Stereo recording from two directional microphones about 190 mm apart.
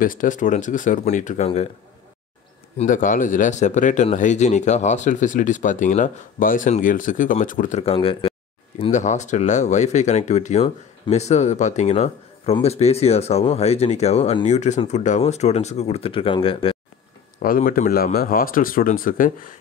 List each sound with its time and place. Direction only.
0.0 s speech: 45° left (ahead or behind)
2.8 s speech: 45° left (ahead or behind)
7.8 s speech: 30° left (ahead or behind)
17.4 s speech: 45° left (ahead or behind)